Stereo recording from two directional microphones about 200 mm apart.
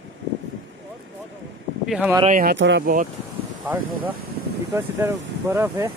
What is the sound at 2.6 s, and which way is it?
Speech, 65° right (ahead or behind).